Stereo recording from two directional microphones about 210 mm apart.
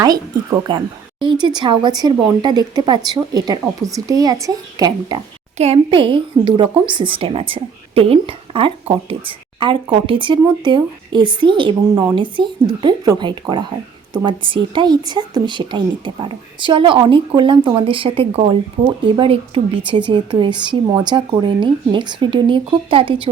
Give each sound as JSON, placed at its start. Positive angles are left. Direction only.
{"t": 0.0, "sound": "a woman's voice", "side_deg": -20}
{"t": 5.5, "sound": "a woman's voice", "side_deg": -30}